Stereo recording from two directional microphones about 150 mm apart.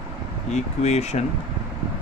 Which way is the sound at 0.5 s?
50° left (ahead or behind).